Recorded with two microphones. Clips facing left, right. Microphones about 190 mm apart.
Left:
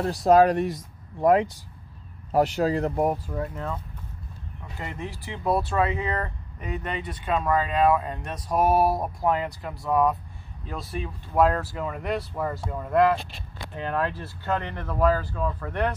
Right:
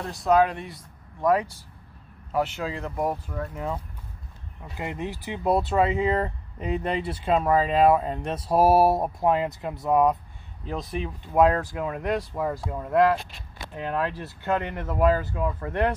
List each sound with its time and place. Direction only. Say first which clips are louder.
0.0 s speech: left 3 dB; 35° left (ahead or behind)
1.2 s speech: left 3 dB; 25° left (ahead or behind)
2.3 s speech: left 5 dB; 40° left (ahead or behind)
3.0 s speech: left 3 dB; 15° left (ahead or behind)
3.5 s speech: right 2 dB; 10° right (ahead or behind)
12.0 s speech: right 1 dB; centre (ahead or behind)
14.2 s speech: right 2 dB; 20° right (ahead or behind)